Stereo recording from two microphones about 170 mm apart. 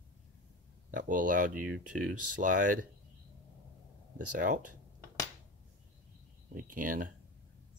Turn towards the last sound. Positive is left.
turn(degrees=-55)  # may be behind; listen again after turning